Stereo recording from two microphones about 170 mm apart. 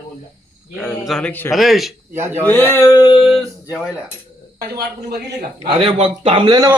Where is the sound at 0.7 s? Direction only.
Centre (ahead or behind).